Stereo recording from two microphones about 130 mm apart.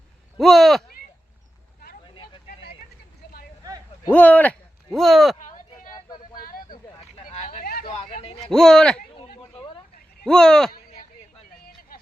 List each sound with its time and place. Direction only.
0.3 s speech: centre (ahead or behind)
2.1 s vehicle: 40° left (ahead or behind)
4.1 s speech: 10° left (ahead or behind)
4.9 s speech: centre (ahead or behind)
5.4 s a sound: 90° left
7.3 s a sound: 60° left (ahead or behind)
8.4 s speech: 5° left (ahead or behind)
9.5 s a sound: 40° left (ahead or behind)
10.2 s speech: 5° left (ahead or behind)